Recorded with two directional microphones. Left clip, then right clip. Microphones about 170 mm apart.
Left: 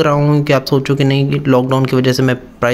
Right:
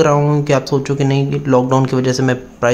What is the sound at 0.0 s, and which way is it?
Speech, 10° left (ahead or behind).